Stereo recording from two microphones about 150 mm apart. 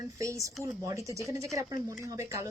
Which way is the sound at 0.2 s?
20° right (ahead or behind).